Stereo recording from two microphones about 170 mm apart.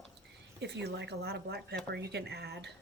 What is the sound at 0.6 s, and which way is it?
Speech, 90° right.